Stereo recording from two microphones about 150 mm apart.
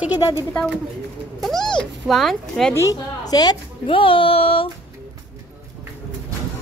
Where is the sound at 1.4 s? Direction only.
Centre (ahead or behind).